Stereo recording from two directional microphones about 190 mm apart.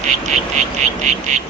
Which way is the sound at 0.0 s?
40° right (ahead or behind).